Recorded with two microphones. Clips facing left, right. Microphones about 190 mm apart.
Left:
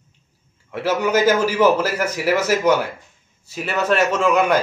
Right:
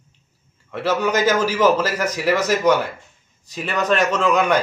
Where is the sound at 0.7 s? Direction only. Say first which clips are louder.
Left 1 dB; 10° left (ahead or behind).